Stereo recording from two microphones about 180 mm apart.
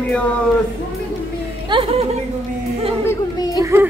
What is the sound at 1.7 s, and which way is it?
Speech, 30° right (ahead or behind).